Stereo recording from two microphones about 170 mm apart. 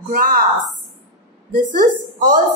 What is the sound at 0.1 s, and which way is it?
Speech, 55° right (ahead or behind).